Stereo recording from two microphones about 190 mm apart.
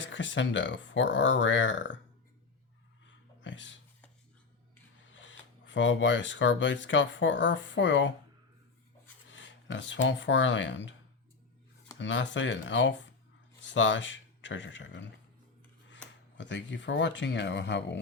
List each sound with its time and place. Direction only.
0.0 s speech: 75° left (ahead or behind)
3.4 s a sound: 75° left (ahead or behind)
5.0 s speech: 75° left (ahead or behind)
9.3 s speech: 75° left (ahead or behind)
11.9 s speech: 75° left (ahead or behind)
16.4 s speech: 70° left (ahead or behind)